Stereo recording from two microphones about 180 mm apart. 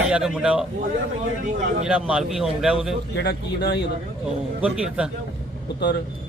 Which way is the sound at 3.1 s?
75° left (ahead or behind).